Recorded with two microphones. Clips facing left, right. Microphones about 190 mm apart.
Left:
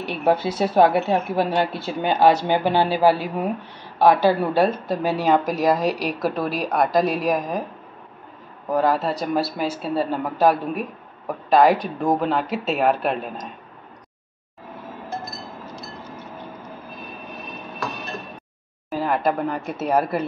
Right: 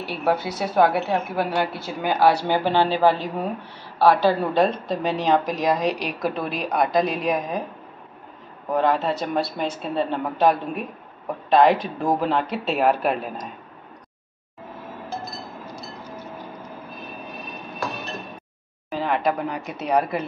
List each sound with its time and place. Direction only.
0.0 s speech: 20° left (ahead or behind); by 7.6 s centre (ahead or behind)
8.7 s speech: centre (ahead or behind)
18.9 s a sound: 5° left (ahead or behind)
19.8 s speech: 5° left (ahead or behind)